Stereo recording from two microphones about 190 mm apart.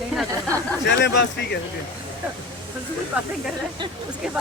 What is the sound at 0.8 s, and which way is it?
Speech, 65° left (ahead or behind).